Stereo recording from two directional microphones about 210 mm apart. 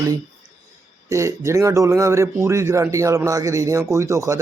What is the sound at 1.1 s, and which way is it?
A man's voice, 15° right (ahead or behind).